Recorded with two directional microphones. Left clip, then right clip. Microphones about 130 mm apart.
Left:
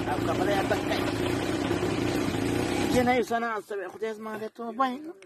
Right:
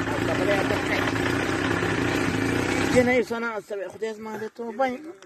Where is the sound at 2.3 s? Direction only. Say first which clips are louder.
Right 4 dB; centre (ahead or behind).